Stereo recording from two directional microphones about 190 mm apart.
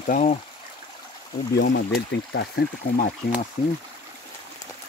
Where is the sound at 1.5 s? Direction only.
70° left (ahead or behind).